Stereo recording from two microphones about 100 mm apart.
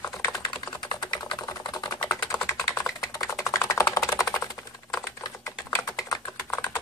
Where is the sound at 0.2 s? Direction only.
25° left (ahead or behind).